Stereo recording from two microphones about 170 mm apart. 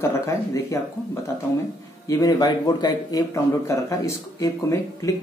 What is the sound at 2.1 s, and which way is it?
Speech, 20° left (ahead or behind).